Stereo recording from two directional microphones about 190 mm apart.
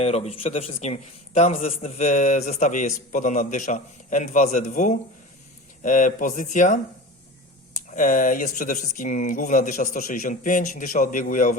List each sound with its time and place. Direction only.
0.0 s a man's voice: 30° left (ahead or behind)
7.9 s speech: 45° left (ahead or behind)